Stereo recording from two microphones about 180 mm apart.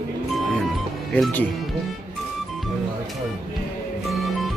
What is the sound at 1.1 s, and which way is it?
Speech, 10° left (ahead or behind).